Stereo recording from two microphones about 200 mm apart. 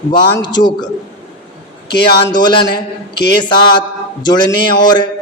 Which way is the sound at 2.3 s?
20° left (ahead or behind).